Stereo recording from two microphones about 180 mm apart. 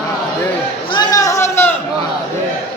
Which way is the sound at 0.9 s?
25° left (ahead or behind).